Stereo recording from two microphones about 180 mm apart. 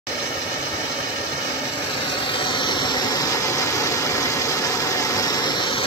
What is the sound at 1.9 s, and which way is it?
Vehicle, 30° left (ahead or behind).